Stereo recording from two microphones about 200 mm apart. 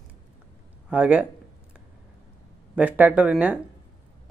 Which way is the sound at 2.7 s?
5° right (ahead or behind).